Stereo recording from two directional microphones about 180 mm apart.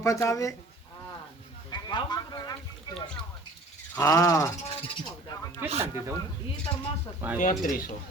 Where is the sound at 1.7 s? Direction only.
25° left (ahead or behind).